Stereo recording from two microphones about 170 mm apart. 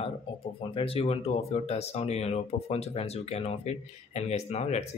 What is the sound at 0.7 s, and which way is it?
Speech, 35° left (ahead or behind).